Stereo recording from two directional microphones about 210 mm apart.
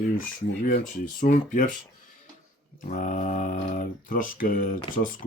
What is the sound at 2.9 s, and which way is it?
Speech, 40° left (ahead or behind).